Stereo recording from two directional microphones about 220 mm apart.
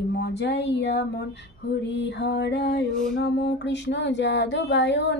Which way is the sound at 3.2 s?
50° left (ahead or behind).